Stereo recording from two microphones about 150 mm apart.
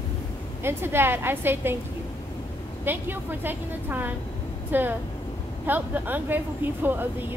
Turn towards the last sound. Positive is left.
turn(degrees=-15)  # may be behind; listen again after turning